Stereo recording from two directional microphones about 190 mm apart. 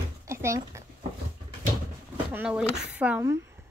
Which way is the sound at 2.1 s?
10° right (ahead or behind).